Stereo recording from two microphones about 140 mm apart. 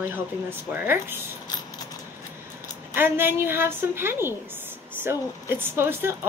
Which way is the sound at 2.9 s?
15° right (ahead or behind).